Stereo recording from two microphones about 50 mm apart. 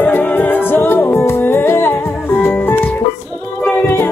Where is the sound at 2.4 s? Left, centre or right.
Left.